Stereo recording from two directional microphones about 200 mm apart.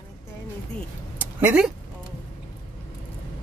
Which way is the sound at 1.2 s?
10° right (ahead or behind).